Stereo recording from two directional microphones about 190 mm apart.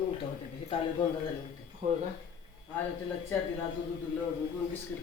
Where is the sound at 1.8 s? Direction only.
40° right (ahead or behind).